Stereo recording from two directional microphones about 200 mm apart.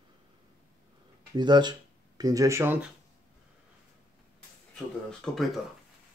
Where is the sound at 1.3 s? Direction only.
20° right (ahead or behind).